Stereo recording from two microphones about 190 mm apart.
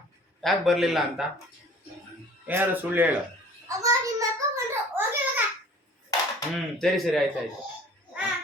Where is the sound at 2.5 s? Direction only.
10° right (ahead or behind).